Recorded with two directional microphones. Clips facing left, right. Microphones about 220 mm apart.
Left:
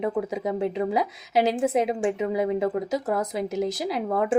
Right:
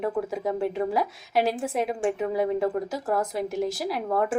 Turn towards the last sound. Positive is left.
turn(degrees=25)  # may be behind; listen again after turning